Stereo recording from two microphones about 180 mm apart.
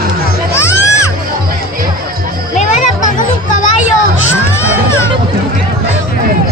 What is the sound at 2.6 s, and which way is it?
Music, 45° left (ahead or behind).